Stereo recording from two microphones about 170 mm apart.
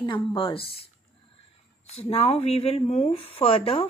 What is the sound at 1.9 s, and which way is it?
Speech, 35° left (ahead or behind).